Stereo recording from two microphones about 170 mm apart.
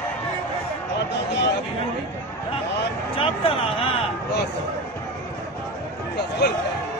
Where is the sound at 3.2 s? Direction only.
35° left (ahead or behind).